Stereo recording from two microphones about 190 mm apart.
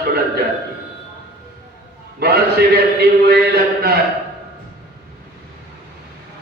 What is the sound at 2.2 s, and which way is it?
Chant, 55° right (ahead or behind).